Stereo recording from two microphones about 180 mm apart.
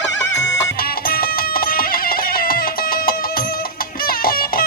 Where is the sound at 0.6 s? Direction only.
70° left (ahead or behind).